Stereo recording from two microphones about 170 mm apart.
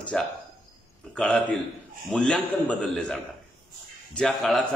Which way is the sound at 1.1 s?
5° left (ahead or behind).